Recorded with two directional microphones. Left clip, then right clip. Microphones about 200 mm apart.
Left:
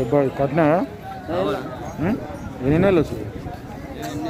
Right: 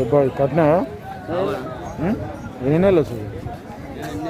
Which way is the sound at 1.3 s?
50° left (ahead or behind).